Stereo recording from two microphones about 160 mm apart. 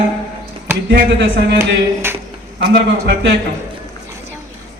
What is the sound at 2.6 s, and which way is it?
Speech, 90° right.